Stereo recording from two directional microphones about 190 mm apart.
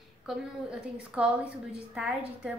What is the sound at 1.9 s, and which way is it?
Speech, 5° right (ahead or behind).